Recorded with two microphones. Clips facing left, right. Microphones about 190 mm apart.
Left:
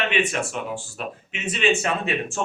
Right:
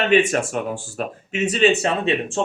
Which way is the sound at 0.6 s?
50° right (ahead or behind).